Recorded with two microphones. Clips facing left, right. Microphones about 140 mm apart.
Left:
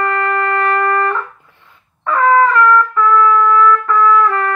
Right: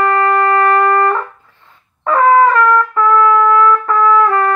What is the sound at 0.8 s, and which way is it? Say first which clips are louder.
Trumpet: right 3 dB; 30° right (ahead or behind).